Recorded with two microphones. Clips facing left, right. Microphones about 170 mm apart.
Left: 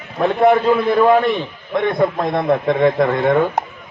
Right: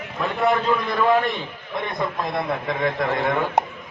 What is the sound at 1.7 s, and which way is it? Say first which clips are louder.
A man's voice: left 10 dB; 50° left (ahead or behind).